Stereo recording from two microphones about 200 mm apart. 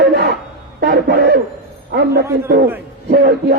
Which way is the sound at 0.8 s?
55° right (ahead or behind).